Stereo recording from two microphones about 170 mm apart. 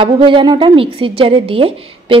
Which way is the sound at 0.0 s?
30° right (ahead or behind).